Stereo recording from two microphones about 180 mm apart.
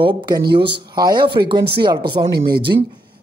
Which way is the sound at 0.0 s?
25° right (ahead or behind).